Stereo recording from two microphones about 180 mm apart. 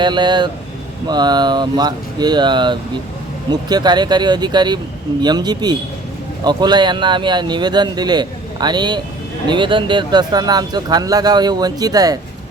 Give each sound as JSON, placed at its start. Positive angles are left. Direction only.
{"t": 0.0, "sound": "speech", "side_deg": -25}